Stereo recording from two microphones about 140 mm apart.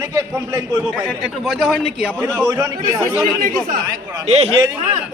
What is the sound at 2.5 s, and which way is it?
Speech, 25° right (ahead or behind).